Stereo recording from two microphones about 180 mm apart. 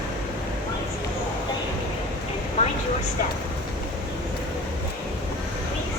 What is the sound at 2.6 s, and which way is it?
Vehicle, 35° left (ahead or behind).